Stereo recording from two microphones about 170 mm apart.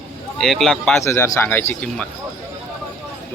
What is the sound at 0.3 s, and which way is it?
Speech, centre (ahead or behind).